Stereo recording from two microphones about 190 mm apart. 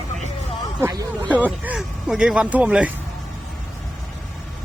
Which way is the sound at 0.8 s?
20° right (ahead or behind).